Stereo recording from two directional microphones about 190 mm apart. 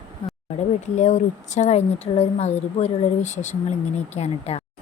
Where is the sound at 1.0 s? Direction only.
40° left (ahead or behind).